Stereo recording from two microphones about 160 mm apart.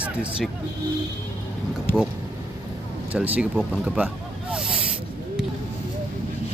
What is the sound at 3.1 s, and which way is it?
Speech, 10° right (ahead or behind).